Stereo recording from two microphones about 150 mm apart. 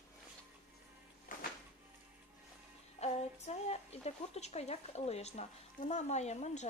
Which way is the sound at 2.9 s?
45° left (ahead or behind).